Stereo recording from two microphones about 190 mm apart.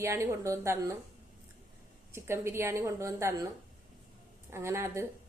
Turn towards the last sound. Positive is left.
turn(degrees=-15)  # may be behind; listen again after turning